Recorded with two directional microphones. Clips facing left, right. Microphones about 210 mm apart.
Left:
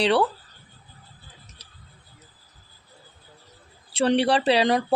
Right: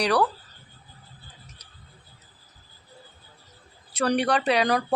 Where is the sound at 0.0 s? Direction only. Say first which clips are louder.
Left 2 dB; 25° left (ahead or behind).